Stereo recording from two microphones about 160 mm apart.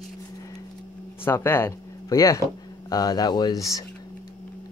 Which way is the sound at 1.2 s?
15° left (ahead or behind).